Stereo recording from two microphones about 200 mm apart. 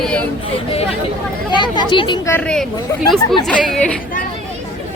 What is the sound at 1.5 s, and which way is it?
Speech, 20° left (ahead or behind).